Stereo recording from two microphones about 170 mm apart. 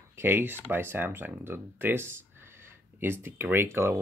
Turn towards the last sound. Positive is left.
turn(degrees=-15)  # may be behind; listen again after turning